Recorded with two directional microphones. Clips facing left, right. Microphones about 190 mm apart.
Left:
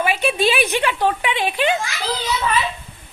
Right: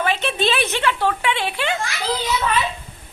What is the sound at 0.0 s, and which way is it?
A woman's voice, 10° left (ahead or behind).